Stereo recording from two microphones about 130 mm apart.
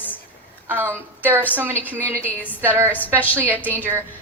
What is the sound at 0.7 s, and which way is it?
A woman's voice, 15° right (ahead or behind).